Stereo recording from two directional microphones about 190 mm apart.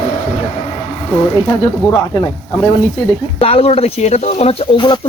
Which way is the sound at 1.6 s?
15° left (ahead or behind).